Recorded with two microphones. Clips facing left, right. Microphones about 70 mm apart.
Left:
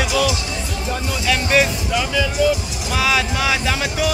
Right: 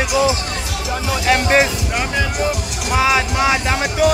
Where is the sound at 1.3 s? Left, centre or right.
Right.